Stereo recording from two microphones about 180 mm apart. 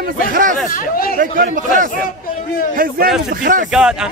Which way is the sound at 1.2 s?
45° right (ahead or behind).